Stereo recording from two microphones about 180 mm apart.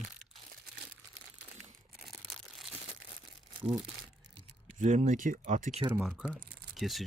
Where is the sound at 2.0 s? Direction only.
Centre (ahead or behind).